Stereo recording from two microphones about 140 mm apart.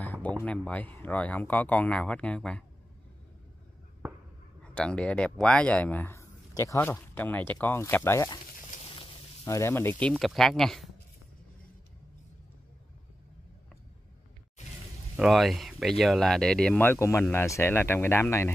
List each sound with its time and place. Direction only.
0.0 s a sound: 10° left (ahead or behind)
0.4 s speech: 10° left (ahead or behind)
4.7 s speech: 5° left (ahead or behind)
8.8 s snake: 35° left (ahead or behind)
9.4 s speech: 20° left (ahead or behind); by 10.9 s 5° left (ahead or behind)
15.1 s speech: centre (ahead or behind); by 18.5 s 15° left (ahead or behind)